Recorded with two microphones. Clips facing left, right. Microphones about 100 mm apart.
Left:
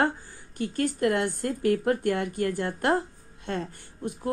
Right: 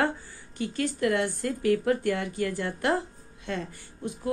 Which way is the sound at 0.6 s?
50° left (ahead or behind).